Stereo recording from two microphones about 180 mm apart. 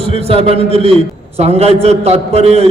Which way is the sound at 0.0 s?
35° right (ahead or behind).